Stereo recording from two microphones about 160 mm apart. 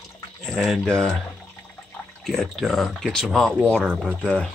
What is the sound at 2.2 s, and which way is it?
Speech, centre (ahead or behind).